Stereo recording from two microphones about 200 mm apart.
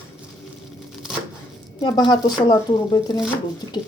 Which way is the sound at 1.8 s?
20° left (ahead or behind).